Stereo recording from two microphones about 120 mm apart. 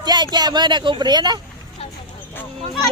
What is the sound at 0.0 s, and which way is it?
A man's voice, 35° right (ahead or behind).